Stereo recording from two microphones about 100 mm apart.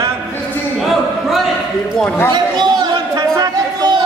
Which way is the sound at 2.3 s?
45° right (ahead or behind).